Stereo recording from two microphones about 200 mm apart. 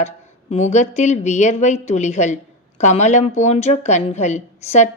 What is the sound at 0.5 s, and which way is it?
A woman's voice, 35° left (ahead or behind).